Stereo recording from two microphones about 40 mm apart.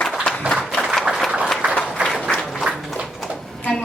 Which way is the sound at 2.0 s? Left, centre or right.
Right.